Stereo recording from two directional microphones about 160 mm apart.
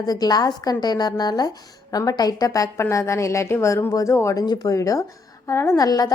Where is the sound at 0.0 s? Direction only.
25° left (ahead or behind).